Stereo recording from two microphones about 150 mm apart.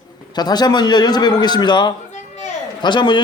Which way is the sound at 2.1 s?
50° left (ahead or behind).